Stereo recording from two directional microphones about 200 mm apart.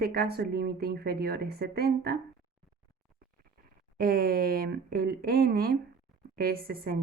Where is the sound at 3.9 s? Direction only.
45° right (ahead or behind).